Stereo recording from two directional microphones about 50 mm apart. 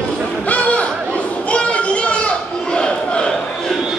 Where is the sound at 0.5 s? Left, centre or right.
Left.